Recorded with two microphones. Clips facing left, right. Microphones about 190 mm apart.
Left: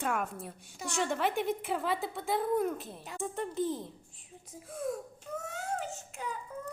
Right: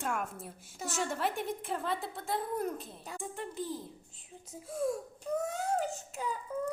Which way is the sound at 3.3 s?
20° left (ahead or behind).